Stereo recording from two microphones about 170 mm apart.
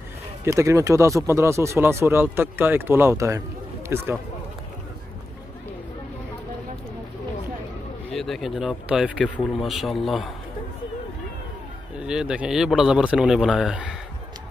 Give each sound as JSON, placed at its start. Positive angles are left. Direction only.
{"t": 0.5, "sound": "speech", "side_deg": -20}
{"t": 8.1, "sound": "speech", "side_deg": 0}
{"t": 12.0, "sound": "speech", "side_deg": -5}